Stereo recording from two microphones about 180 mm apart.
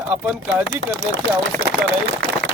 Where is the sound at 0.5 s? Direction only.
90° right.